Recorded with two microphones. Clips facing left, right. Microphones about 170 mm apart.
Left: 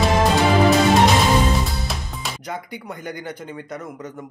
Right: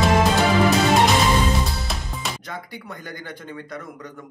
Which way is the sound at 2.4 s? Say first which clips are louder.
Left 4 dB; 20° left (ahead or behind).